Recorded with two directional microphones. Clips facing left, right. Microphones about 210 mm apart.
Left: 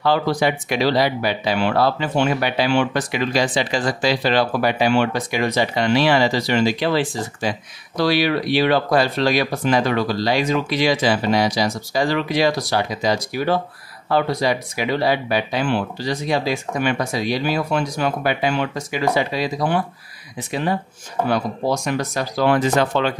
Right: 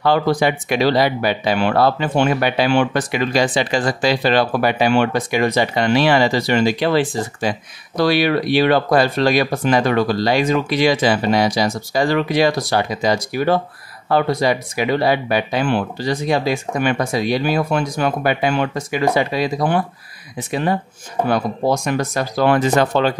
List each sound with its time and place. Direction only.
0.0 s speech: 50° right (ahead or behind)